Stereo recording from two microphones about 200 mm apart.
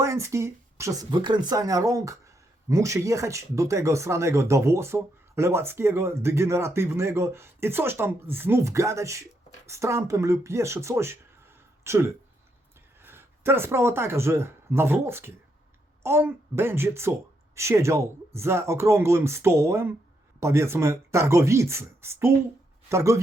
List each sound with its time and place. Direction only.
0.0 s speech: 15° right (ahead or behind)